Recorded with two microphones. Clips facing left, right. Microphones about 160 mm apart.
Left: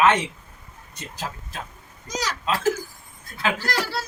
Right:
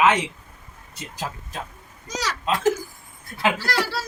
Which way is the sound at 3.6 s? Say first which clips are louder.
Right 2 dB; 15° left (ahead or behind).